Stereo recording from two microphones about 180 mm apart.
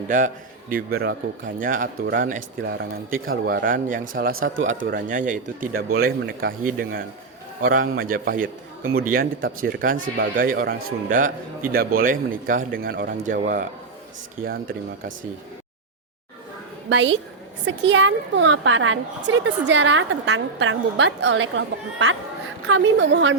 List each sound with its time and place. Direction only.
0.7 s a man's voice: 60° right (ahead or behind)
2.6 s speech: 90° right
3.2 s speech: 55° right (ahead or behind); by 4.9 s 90° right
4.9 s a man's voice: 50° right (ahead or behind)
16.9 s a woman's voice: 90° right